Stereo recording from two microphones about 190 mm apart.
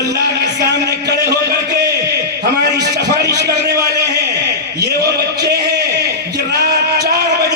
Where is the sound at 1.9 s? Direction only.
20° right (ahead or behind).